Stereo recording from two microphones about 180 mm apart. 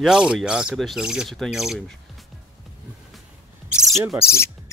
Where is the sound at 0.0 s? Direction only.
5° right (ahead or behind).